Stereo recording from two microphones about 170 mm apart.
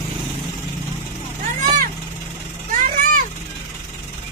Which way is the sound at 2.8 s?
55° right (ahead or behind).